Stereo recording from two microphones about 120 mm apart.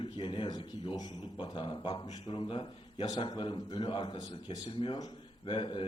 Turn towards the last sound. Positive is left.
turn(degrees=45)  # may be behind; listen again after turning